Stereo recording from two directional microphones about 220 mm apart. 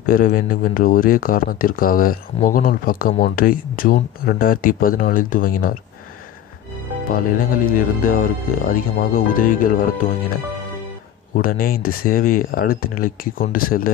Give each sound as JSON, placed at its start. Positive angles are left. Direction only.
{"t": 0.0, "sound": "speech", "side_deg": 40}
{"t": 7.1, "sound": "speech", "side_deg": 40}
{"t": 11.3, "sound": "speech", "side_deg": 40}